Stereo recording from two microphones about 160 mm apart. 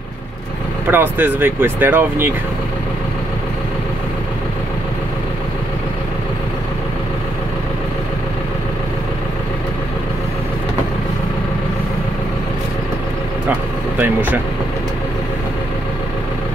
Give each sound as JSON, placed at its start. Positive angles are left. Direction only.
{"t": 0.8, "sound": "speech", "side_deg": -10}
{"t": 13.9, "sound": "speech", "side_deg": -10}